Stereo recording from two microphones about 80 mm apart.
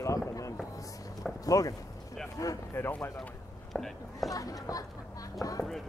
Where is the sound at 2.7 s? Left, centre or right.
Left.